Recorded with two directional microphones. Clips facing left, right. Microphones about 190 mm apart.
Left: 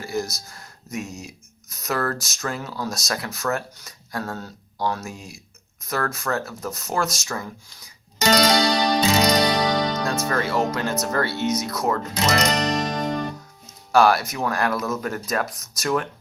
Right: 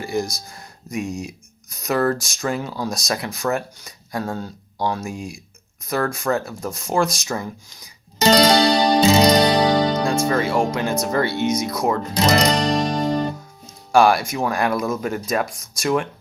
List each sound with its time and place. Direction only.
0.0 s speech: 15° right (ahead or behind)
8.2 s music: 30° right (ahead or behind)
10.2 s speech: 10° right (ahead or behind)
12.1 s music: 35° right (ahead or behind)
13.9 s speech: 10° right (ahead or behind)